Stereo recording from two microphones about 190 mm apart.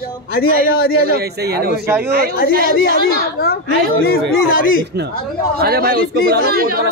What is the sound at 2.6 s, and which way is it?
Speech, 55° left (ahead or behind).